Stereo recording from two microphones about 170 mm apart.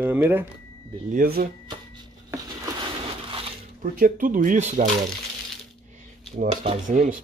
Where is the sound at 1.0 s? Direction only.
60° right (ahead or behind).